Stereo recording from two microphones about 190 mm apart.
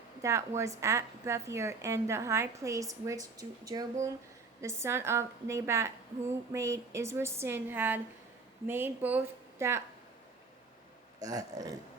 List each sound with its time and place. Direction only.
0.2 s a woman's voice: 15° right (ahead or behind)
11.2 s speech: 20° right (ahead or behind)